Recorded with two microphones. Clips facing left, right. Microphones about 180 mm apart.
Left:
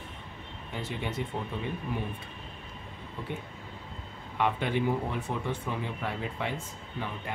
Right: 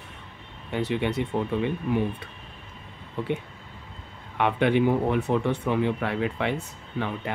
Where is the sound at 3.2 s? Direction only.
70° right (ahead or behind).